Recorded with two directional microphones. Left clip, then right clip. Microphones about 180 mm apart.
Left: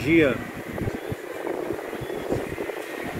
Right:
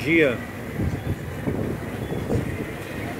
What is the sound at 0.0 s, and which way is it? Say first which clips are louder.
Speech: even; 15° left (ahead or behind).